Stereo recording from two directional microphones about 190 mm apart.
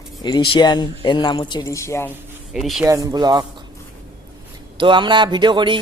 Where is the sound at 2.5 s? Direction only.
Centre (ahead or behind).